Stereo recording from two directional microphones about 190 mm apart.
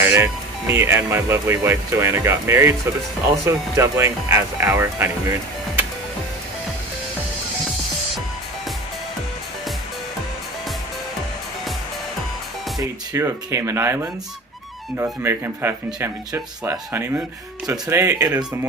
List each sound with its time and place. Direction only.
0.0 s speech: 15° right (ahead or behind)
13.1 s speech: 15° right (ahead or behind)
15.2 s speech: 10° right (ahead or behind)